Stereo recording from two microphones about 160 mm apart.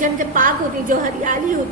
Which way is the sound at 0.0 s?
55° right (ahead or behind).